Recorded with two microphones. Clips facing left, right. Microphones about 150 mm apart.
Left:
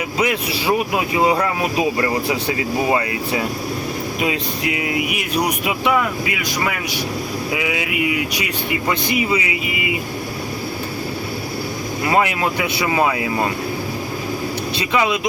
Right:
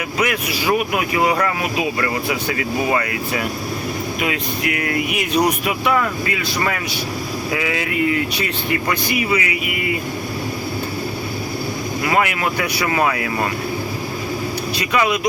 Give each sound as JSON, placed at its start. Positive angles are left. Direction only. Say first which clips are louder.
{"t": 0.2, "sound": "speech", "louder": "left 1 dB", "side_deg": 25}
{"t": 4.2, "sound": "speech", "louder": "left 2 dB", "side_deg": 25}
{"t": 7.5, "sound": "speech", "louder": "right 1 dB", "side_deg": 10}
{"t": 8.9, "sound": "speech", "louder": "left 2 dB", "side_deg": 25}
{"t": 12.0, "sound": "speech", "louder": "left 1 dB", "side_deg": 25}
{"t": 14.8, "sound": "speech", "louder": "even", "side_deg": 25}